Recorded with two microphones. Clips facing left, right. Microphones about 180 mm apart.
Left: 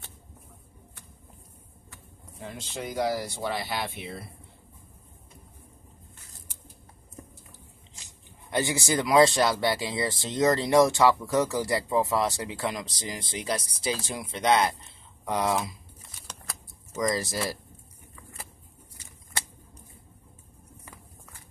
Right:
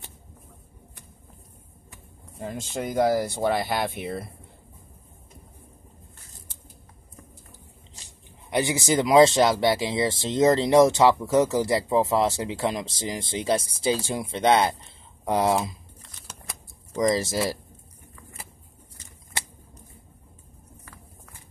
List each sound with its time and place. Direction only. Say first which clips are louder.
2.4 s speech: right 6 dB; 45° right (ahead or behind)
8.5 s speech: right 3 dB; 15° right (ahead or behind)
17.0 s speech: right 5 dB; 25° right (ahead or behind)